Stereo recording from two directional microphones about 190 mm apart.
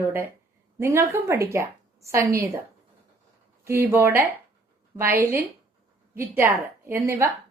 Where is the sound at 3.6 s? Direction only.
15° right (ahead or behind).